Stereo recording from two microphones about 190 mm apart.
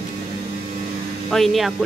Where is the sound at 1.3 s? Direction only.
Centre (ahead or behind).